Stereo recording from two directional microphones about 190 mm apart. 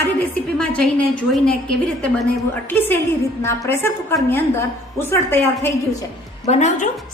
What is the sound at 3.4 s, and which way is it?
A woman's voice, 15° left (ahead or behind).